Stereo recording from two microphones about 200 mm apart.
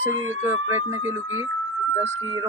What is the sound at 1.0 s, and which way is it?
Speech, 80° right.